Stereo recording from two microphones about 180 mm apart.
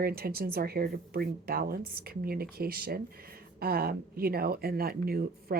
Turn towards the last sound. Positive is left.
turn(degrees=-55)  # may be behind; listen again after turning